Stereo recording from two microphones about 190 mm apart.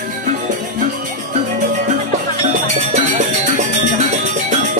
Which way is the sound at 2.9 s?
35° right (ahead or behind).